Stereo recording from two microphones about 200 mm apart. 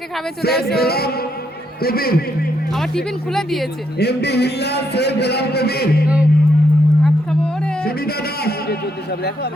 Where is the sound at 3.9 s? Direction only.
55° left (ahead or behind).